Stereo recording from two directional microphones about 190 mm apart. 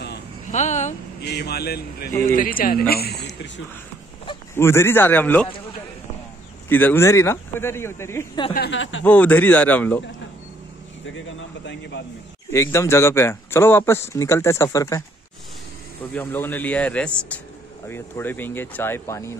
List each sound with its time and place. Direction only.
0.5 s a sound: 40° left (ahead or behind)
1.2 s speech: 60° left (ahead or behind)
4.6 s speech: 15° left (ahead or behind)
6.7 s speech: 10° left (ahead or behind)
8.5 s speech: 75° left (ahead or behind)
9.0 s speech: 10° left (ahead or behind)
11.1 s a man's voice: 70° left (ahead or behind)
12.4 s speech: 15° left (ahead or behind)
16.2 s speech: 10° left (ahead or behind)